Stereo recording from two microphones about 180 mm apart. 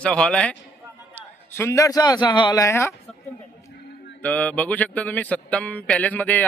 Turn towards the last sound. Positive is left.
turn(degrees=10)  # may be behind; listen again after turning